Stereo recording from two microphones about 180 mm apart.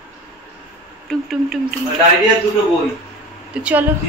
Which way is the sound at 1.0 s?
Centre (ahead or behind).